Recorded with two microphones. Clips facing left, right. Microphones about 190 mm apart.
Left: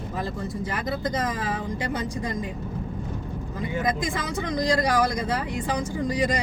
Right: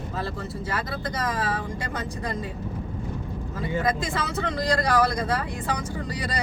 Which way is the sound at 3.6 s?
15° left (ahead or behind).